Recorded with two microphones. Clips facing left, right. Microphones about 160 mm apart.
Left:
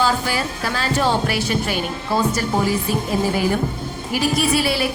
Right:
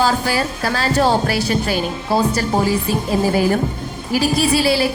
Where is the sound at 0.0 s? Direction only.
40° right (ahead or behind).